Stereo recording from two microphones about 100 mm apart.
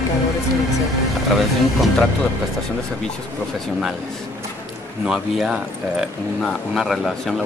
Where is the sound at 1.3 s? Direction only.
Centre (ahead or behind).